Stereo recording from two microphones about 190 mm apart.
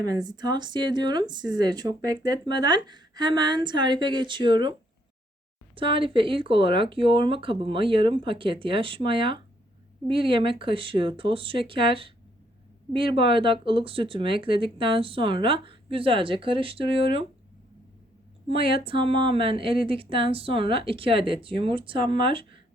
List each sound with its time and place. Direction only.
0.0 s speech: 20° right (ahead or behind)
5.7 s speech: 25° right (ahead or behind)
18.4 s speech: 30° right (ahead or behind)